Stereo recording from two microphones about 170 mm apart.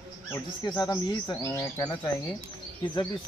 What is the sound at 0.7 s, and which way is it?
Speech, 25° left (ahead or behind).